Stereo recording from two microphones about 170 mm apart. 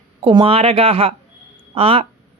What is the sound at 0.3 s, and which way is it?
Speech, 30° right (ahead or behind).